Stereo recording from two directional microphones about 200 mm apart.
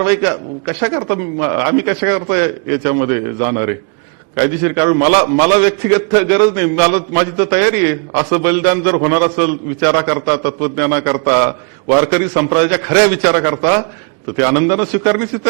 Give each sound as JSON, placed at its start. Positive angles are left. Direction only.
{"t": 0.0, "sound": "a man's voice", "side_deg": -10}